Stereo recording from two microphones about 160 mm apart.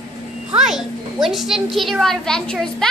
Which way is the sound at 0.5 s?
5° right (ahead or behind).